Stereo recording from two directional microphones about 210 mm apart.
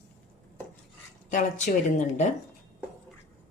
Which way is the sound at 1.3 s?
35° left (ahead or behind).